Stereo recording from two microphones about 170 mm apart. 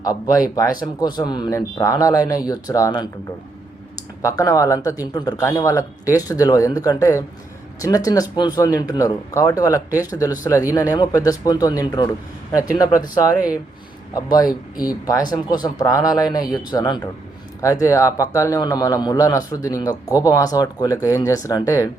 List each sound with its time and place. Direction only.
0.0 s a man's voice: 20° left (ahead or behind)
4.2 s a man's voice: 20° left (ahead or behind)
14.8 s a man's voice: 20° left (ahead or behind)